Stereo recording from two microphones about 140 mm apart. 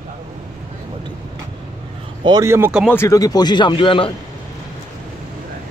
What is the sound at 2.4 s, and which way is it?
Speech, 20° right (ahead or behind).